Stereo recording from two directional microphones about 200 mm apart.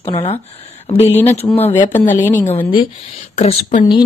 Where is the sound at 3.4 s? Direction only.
30° left (ahead or behind).